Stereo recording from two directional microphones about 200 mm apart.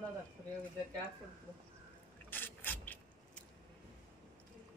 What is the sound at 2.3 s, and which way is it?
Mechanisms, 10° left (ahead or behind).